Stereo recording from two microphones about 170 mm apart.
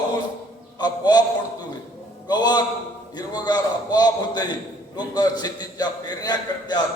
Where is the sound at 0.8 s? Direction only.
25° left (ahead or behind).